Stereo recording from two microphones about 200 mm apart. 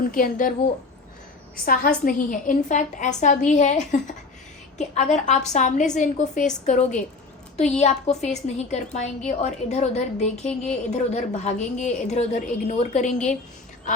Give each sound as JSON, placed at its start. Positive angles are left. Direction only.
{"t": 0.1, "sound": "a woman's voice", "side_deg": 40}
{"t": 1.6, "sound": "a woman's voice", "side_deg": 45}